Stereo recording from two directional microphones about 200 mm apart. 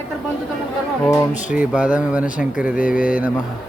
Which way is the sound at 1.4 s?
5° right (ahead or behind).